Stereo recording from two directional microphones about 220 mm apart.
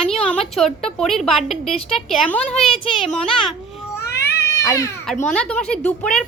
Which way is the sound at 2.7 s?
25° left (ahead or behind).